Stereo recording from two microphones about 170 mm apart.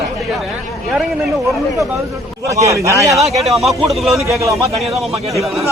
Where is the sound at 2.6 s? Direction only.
20° right (ahead or behind).